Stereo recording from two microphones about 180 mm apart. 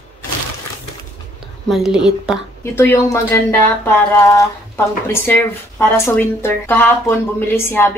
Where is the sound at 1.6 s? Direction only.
Centre (ahead or behind).